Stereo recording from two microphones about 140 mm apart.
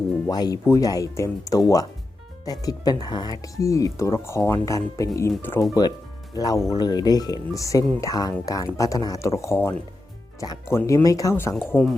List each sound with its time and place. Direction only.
0.3 s speech: 25° left (ahead or behind)
6.3 s speech: 25° left (ahead or behind)